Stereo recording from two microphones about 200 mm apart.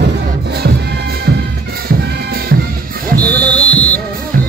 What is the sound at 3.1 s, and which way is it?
Music, 5° left (ahead or behind).